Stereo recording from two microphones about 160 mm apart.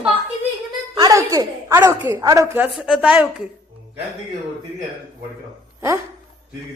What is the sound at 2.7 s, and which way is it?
Speech, 5° right (ahead or behind).